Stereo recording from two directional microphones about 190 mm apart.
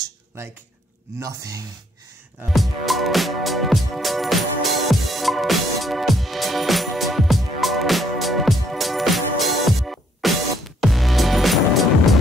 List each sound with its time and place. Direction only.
1.2 s speech: 20° right (ahead or behind)
2.5 s music: centre (ahead or behind)